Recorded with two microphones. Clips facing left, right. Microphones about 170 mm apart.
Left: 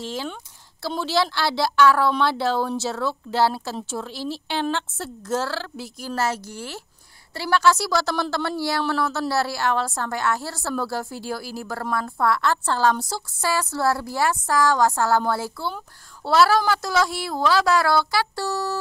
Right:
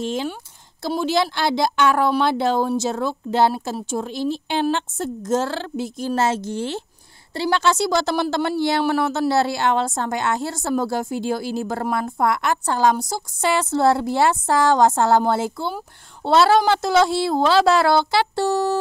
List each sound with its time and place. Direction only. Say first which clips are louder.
0.0 s a woman's voice: right 5 dB; 20° right (ahead or behind)